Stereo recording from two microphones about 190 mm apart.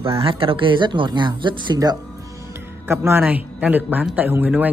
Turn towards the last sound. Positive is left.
turn(degrees=-10)  # may be behind; listen again after turning